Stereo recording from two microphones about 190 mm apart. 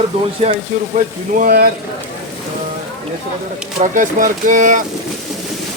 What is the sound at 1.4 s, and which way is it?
Speech, 50° right (ahead or behind).